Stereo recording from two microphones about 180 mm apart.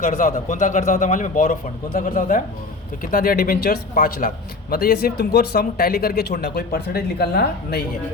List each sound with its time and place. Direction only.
0.0 s a man's voice: 45° left (ahead or behind)